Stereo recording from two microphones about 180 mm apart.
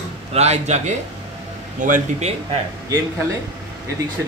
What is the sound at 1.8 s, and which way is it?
Speech, 45° right (ahead or behind).